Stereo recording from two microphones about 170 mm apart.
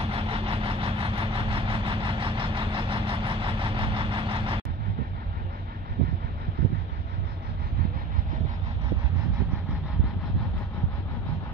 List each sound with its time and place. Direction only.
0.0 s vehicle: 35° right (ahead or behind)